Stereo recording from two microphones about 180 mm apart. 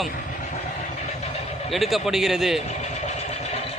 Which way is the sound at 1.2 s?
35° left (ahead or behind).